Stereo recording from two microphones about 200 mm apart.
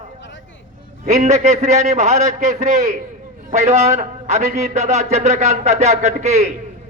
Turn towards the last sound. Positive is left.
turn(degrees=-35)  # may be behind; listen again after turning